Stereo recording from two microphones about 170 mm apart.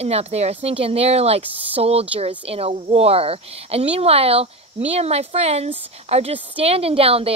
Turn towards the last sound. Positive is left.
turn(degrees=-35)  # may be behind; listen again after turning